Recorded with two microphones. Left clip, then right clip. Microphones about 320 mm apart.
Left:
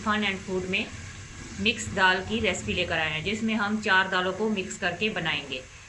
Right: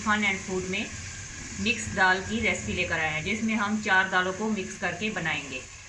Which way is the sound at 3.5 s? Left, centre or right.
Centre.